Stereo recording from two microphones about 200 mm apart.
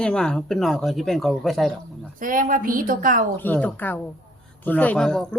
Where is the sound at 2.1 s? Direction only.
45° right (ahead or behind).